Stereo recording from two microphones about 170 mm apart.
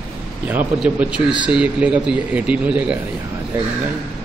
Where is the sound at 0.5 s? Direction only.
10° right (ahead or behind).